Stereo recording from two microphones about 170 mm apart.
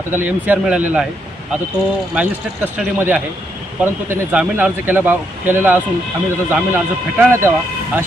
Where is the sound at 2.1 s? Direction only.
10° right (ahead or behind).